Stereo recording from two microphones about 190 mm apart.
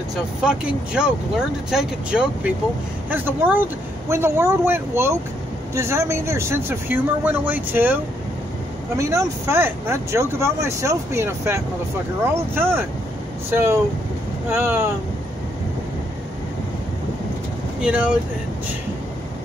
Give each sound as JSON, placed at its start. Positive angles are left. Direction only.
{"t": 0.1, "sound": "speech", "side_deg": -5}
{"t": 17.8, "sound": "speech", "side_deg": -5}